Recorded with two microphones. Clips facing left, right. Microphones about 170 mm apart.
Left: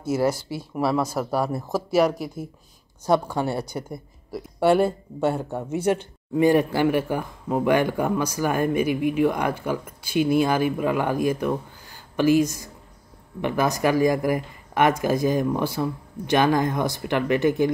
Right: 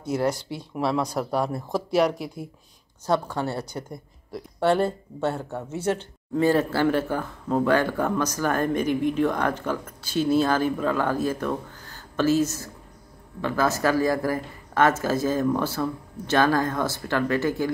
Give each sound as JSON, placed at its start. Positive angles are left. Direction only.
{"t": 0.0, "sound": "speech", "side_deg": 5}
{"t": 3.1, "sound": "a woman's voice", "side_deg": 15}